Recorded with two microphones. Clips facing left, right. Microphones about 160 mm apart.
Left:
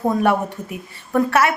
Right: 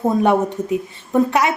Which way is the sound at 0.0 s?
20° right (ahead or behind).